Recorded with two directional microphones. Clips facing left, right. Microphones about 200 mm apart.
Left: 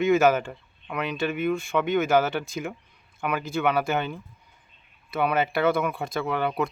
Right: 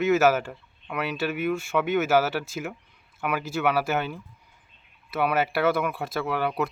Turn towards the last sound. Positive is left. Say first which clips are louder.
# even
turn(degrees=-5)  # may be behind; listen again after turning